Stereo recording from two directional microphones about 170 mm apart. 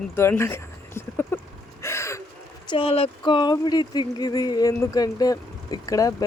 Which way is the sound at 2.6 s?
35° left (ahead or behind).